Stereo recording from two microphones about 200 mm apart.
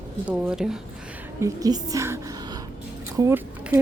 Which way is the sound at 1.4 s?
15° right (ahead or behind).